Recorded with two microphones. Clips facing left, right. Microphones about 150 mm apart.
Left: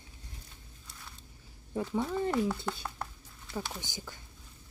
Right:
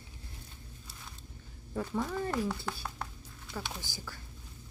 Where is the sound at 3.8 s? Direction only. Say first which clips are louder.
Left 1 dB; 20° left (ahead or behind).